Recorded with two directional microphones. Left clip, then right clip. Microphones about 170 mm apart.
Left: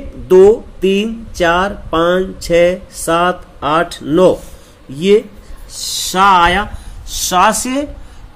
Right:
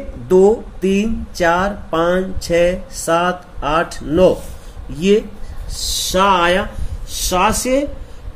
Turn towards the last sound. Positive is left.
turn(degrees=45)  # may be behind; listen again after turning